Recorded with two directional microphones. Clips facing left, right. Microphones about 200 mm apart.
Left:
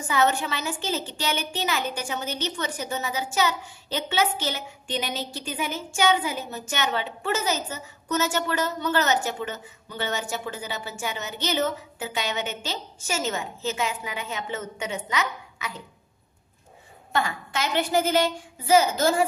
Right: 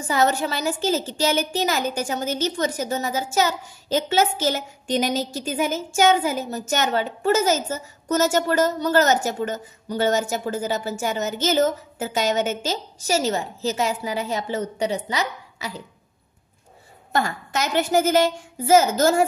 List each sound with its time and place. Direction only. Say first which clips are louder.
0.1 s a woman's voice: right 3 dB; 40° right (ahead or behind)
17.1 s a woman's voice: right 3 dB; 45° right (ahead or behind)